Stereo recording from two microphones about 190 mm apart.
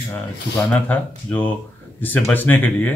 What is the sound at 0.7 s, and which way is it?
Speech, 10° left (ahead or behind).